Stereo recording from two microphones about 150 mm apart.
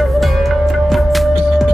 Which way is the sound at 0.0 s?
Centre (ahead or behind).